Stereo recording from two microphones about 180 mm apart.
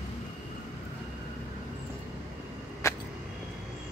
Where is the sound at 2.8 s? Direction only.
15° left (ahead or behind).